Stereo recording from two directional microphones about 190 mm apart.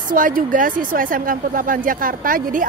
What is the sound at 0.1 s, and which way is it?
A woman's voice, 45° right (ahead or behind).